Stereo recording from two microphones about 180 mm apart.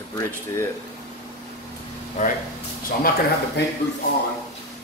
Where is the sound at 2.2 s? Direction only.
40° left (ahead or behind).